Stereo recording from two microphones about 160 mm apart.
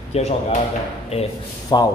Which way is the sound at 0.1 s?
40° left (ahead or behind).